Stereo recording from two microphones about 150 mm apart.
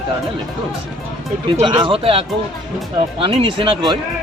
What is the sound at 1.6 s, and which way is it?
Speech, 30° right (ahead or behind).